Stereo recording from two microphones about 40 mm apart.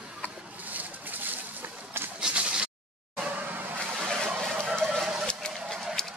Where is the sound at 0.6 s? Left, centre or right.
Right.